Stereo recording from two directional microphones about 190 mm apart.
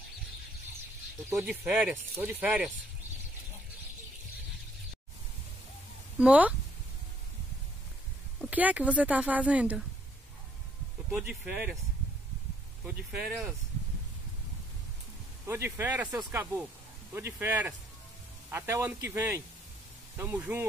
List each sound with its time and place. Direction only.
1.3 s speech: 10° right (ahead or behind)
6.1 s speech: 5° right (ahead or behind)
8.4 s speech: 5° right (ahead or behind)
11.1 s speech: 5° right (ahead or behind)
12.8 s speech: 5° right (ahead or behind)
15.4 s speech: 15° right (ahead or behind)